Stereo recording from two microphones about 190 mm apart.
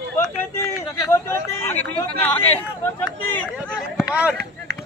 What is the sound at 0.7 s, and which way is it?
Speech, 20° left (ahead or behind).